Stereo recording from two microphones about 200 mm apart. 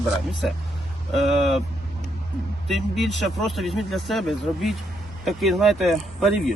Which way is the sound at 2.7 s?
Centre (ahead or behind).